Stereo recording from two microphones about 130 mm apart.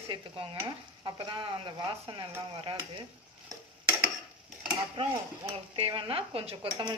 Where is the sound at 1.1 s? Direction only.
35° right (ahead or behind).